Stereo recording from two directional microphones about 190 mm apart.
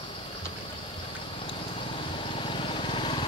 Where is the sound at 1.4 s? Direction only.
30° left (ahead or behind).